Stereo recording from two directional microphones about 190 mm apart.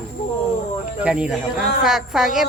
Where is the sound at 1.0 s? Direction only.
5° right (ahead or behind).